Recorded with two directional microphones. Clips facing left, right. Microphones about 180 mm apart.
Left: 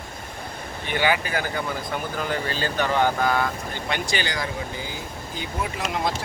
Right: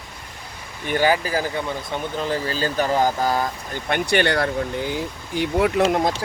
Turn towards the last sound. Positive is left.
turn(degrees=-45)  # may be behind; listen again after turning